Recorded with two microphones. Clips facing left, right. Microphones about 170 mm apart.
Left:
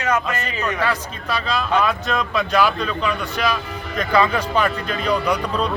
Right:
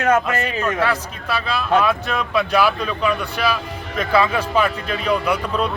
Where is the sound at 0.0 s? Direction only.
55° right (ahead or behind).